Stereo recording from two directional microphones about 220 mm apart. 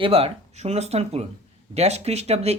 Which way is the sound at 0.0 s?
25° right (ahead or behind).